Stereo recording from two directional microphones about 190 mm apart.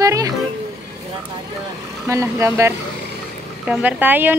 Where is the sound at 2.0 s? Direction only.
15° right (ahead or behind).